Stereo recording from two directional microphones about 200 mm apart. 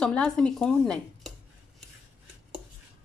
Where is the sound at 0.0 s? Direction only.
5° left (ahead or behind).